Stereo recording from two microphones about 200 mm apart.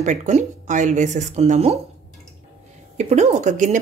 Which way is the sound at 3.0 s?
35° right (ahead or behind).